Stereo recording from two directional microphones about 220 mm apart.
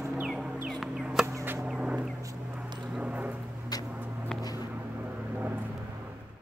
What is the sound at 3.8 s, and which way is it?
Vehicle, 10° right (ahead or behind).